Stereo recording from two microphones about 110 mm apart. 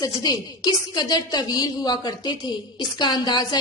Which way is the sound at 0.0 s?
35° left (ahead or behind).